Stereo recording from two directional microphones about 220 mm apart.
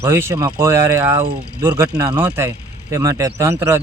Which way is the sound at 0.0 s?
10° right (ahead or behind).